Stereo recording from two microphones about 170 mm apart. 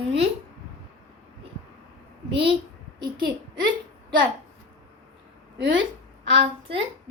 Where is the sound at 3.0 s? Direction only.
25° right (ahead or behind).